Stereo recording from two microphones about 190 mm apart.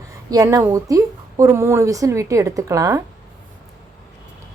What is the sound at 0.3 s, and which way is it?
A woman's voice, 20° right (ahead or behind).